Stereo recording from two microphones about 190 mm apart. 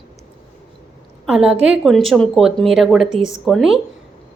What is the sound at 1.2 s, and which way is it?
A woman's voice, 5° right (ahead or behind).